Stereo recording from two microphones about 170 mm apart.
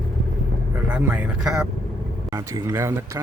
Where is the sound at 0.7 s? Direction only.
10° right (ahead or behind).